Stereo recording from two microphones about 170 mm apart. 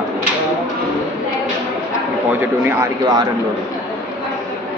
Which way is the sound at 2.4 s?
15° right (ahead or behind).